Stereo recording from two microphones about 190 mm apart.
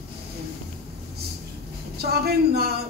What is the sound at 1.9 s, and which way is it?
Speech, 55° right (ahead or behind).